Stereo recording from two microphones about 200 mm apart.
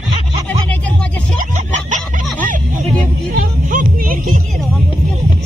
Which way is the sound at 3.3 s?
45° right (ahead or behind).